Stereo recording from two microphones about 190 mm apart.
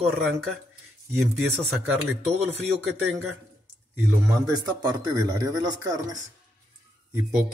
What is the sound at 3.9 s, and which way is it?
A man's voice, 15° right (ahead or behind).